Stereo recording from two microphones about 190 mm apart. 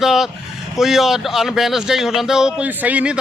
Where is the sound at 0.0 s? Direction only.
Centre (ahead or behind).